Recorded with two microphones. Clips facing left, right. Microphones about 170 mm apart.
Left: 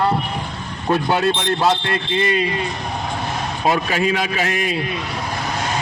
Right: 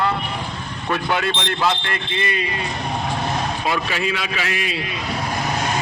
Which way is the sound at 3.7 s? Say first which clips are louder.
Left 7 dB; 40° left (ahead or behind).